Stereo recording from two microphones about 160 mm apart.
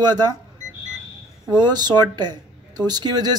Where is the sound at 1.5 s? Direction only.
25° right (ahead or behind).